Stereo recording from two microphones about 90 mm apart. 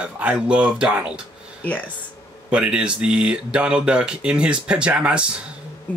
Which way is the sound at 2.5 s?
10° right (ahead or behind).